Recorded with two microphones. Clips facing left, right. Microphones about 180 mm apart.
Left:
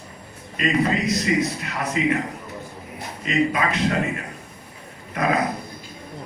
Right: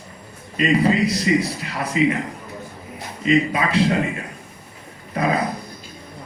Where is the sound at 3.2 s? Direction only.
30° right (ahead or behind).